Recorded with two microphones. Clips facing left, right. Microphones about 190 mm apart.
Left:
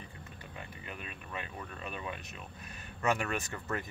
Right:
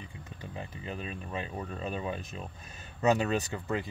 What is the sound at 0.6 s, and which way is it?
Speech, 30° right (ahead or behind).